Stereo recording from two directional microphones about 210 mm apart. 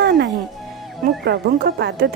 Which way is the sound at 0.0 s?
50° right (ahead or behind).